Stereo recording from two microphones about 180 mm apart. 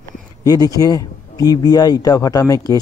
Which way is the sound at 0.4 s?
20° left (ahead or behind).